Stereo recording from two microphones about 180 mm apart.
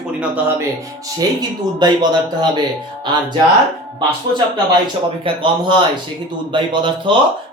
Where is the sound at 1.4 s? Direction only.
25° right (ahead or behind).